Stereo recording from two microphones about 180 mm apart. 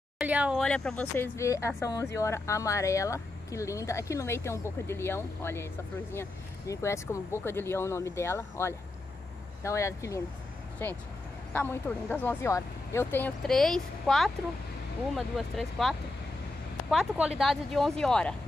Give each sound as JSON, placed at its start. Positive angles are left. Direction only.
{"t": 0.2, "sound": "speech", "side_deg": -5}
{"t": 0.7, "sound": "speech", "side_deg": 5}
{"t": 6.7, "sound": "speech", "side_deg": 15}